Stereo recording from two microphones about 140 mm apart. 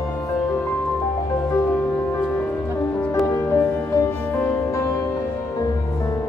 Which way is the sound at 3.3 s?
20° left (ahead or behind).